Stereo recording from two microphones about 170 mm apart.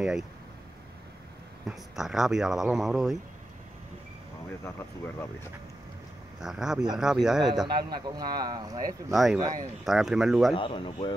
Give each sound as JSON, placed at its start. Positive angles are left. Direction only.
{"t": 1.7, "sound": "speech", "side_deg": -5}
{"t": 4.5, "sound": "speech", "side_deg": 15}
{"t": 6.4, "sound": "speech", "side_deg": -5}
{"t": 7.6, "sound": "a man's voice", "side_deg": -25}
{"t": 9.1, "sound": "speech", "side_deg": 0}
{"t": 10.5, "sound": "speech", "side_deg": 30}